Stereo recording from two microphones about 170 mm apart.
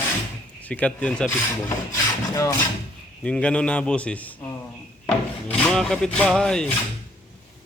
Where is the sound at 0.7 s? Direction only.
10° left (ahead or behind).